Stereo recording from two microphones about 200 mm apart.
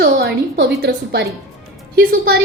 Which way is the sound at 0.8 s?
60° right (ahead or behind).